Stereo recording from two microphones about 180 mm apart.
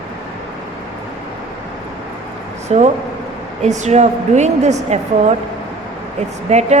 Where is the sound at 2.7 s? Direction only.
35° right (ahead or behind).